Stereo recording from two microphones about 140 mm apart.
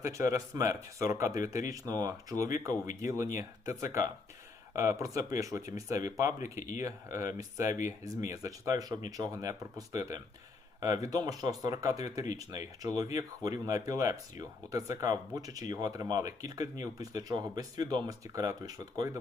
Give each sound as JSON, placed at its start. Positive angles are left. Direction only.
{"t": 0.0, "sound": "speech", "side_deg": -20}